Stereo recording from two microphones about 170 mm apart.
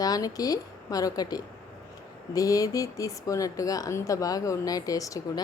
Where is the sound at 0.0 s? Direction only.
20° left (ahead or behind).